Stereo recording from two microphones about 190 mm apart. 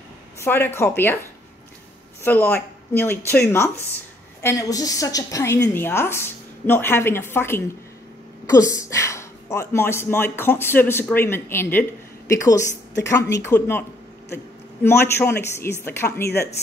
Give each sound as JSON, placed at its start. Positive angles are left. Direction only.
{"t": 0.4, "sound": "speech", "side_deg": 10}
{"t": 2.2, "sound": "a man's voice", "side_deg": 10}